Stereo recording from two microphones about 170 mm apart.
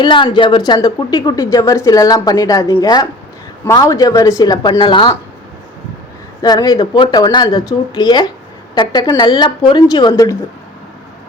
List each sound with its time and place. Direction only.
0.0 s a woman's voice: 25° left (ahead or behind)
6.4 s a woman's voice: 25° left (ahead or behind)